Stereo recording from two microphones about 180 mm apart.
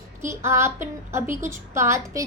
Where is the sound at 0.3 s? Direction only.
15° right (ahead or behind).